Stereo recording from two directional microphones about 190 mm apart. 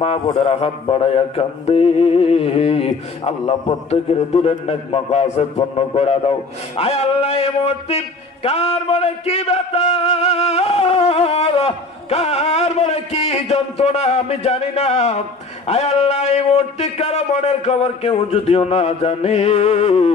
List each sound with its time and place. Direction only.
0.3 s a man's voice: 30° left (ahead or behind)